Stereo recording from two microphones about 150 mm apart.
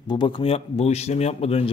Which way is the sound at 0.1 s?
35° left (ahead or behind).